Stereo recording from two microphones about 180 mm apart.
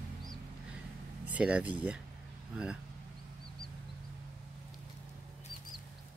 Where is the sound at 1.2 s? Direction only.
5° right (ahead or behind).